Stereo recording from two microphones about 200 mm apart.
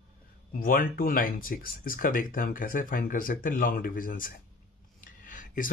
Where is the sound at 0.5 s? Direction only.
45° left (ahead or behind).